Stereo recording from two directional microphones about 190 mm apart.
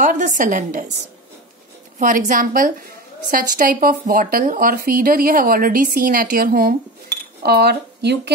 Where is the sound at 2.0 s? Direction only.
45° right (ahead or behind).